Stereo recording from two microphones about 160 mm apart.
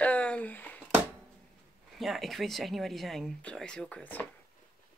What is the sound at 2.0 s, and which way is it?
Speech, centre (ahead or behind).